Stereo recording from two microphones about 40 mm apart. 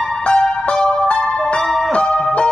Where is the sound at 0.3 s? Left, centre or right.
Left.